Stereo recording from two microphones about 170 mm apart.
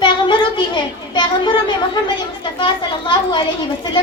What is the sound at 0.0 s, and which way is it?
Children playing, 30° left (ahead or behind).